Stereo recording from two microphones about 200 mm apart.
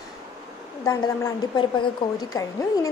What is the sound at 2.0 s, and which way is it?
Speech, 25° left (ahead or behind).